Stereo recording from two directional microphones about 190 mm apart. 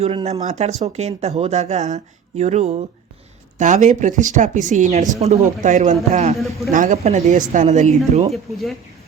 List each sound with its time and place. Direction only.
0.0 s speech: 30° right (ahead or behind)
0.4 s speech: 35° right (ahead or behind)
6.3 s speech: centre (ahead or behind)
6.7 s speech: 40° right (ahead or behind)
8.3 s speech: centre (ahead or behind)